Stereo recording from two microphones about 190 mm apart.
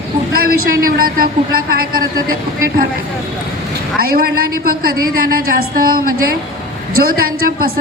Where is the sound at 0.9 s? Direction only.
50° right (ahead or behind).